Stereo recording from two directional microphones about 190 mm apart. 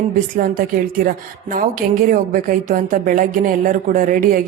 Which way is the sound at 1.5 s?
45° right (ahead or behind).